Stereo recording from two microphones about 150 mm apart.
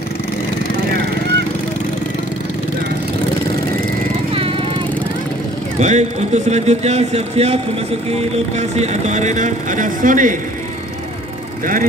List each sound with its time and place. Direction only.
4.3 s vehicle: 40° right (ahead or behind)
5.8 s speech: 50° right (ahead or behind)